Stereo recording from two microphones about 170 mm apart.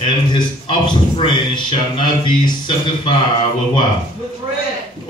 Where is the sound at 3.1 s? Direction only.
30° left (ahead or behind).